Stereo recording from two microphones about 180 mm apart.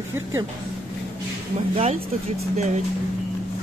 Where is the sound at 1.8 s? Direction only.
35° right (ahead or behind).